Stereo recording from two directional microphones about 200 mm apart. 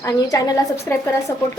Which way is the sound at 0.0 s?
15° left (ahead or behind).